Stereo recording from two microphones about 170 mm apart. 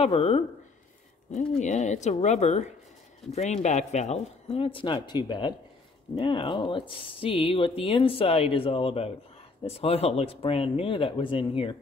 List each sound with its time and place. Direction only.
0.0 s speech: 35° left (ahead or behind)
1.6 s speech: 45° left (ahead or behind)